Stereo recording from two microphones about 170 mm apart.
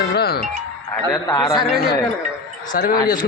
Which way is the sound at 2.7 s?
55° left (ahead or behind).